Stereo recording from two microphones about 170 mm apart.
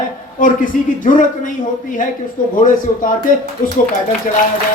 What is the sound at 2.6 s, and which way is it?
Speech, 55° left (ahead or behind).